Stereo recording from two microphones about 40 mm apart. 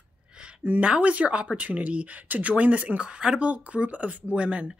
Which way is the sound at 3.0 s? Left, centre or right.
Right.